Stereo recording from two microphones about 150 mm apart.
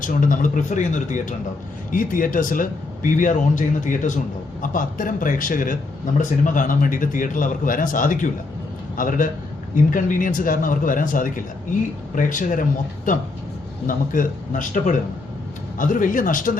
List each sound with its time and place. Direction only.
0.0 s a man's voice: 60° left (ahead or behind)